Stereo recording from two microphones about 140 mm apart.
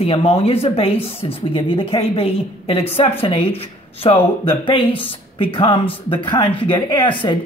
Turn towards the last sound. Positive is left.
turn(degrees=35)  # may be behind; listen again after turning